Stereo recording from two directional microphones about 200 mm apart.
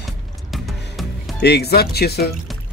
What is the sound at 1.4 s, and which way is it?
Speech, 55° left (ahead or behind).